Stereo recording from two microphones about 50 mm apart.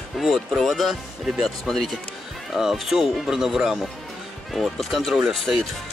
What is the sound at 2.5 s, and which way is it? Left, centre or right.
Speech, centre.